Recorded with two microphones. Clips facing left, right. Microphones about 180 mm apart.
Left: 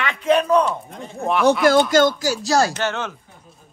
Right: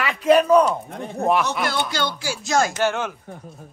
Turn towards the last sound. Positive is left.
turn(degrees=-10)  # may be behind; listen again after turning